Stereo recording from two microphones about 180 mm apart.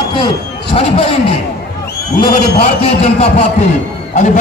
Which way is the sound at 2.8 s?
35° left (ahead or behind).